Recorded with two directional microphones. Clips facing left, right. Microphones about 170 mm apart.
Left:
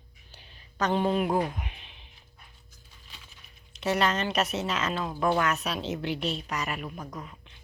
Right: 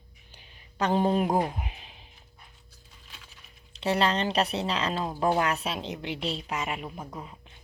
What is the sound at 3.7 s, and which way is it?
A woman's voice, 30° right (ahead or behind).